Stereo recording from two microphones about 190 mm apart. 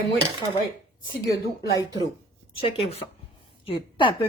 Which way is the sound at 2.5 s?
30° left (ahead or behind).